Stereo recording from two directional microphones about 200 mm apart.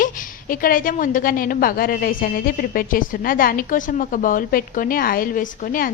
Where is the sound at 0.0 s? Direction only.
45° left (ahead or behind).